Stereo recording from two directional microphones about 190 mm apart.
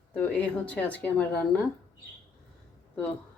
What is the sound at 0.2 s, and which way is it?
Speech, 5° left (ahead or behind).